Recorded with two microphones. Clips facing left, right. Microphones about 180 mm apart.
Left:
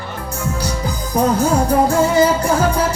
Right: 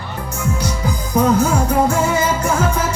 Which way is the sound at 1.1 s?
35° left (ahead or behind).